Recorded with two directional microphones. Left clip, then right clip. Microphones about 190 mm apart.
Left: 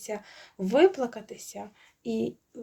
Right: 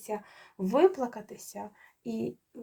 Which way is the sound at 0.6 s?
25° left (ahead or behind).